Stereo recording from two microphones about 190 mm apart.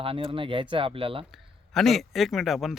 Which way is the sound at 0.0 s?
30° right (ahead or behind).